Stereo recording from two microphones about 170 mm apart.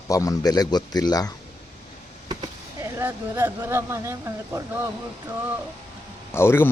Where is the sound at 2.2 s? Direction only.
20° right (ahead or behind).